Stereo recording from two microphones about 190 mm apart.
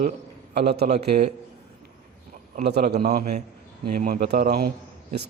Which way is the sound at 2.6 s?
60° right (ahead or behind).